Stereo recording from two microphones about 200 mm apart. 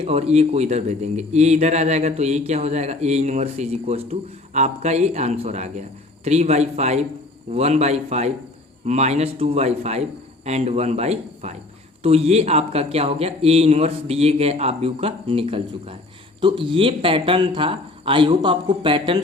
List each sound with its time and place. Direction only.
0.0 s speech: 30° right (ahead or behind)